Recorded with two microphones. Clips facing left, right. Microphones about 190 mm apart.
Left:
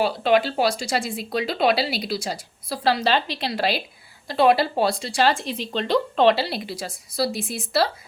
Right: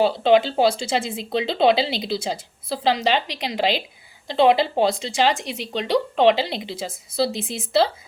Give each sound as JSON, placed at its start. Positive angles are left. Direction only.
{"t": 0.0, "sound": "speech", "side_deg": -25}